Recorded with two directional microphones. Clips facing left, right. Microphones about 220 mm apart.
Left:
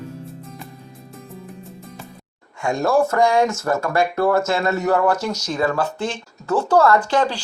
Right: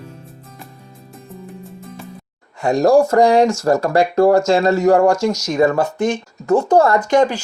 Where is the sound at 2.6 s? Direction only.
35° right (ahead or behind).